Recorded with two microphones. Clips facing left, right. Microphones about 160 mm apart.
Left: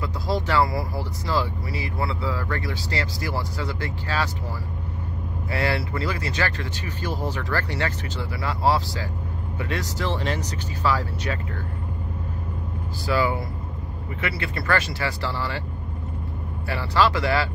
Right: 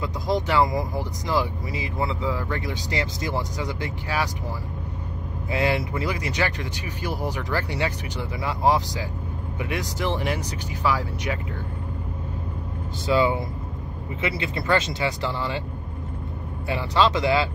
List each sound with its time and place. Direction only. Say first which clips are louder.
0.0 s speech: right 1 dB; 20° right (ahead or behind)
5.5 s speech: right 2 dB; 15° right (ahead or behind)
13.0 s speech: right 2 dB; 20° right (ahead or behind)
16.6 s speech: even; 20° right (ahead or behind)